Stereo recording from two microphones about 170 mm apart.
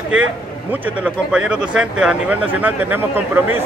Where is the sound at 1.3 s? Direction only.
5° right (ahead or behind).